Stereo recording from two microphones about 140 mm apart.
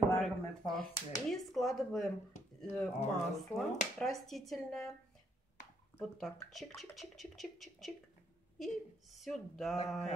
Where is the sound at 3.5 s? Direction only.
20° left (ahead or behind).